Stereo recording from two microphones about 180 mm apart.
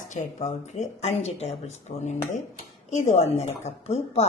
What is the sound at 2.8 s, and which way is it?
A woman's voice, 40° left (ahead or behind).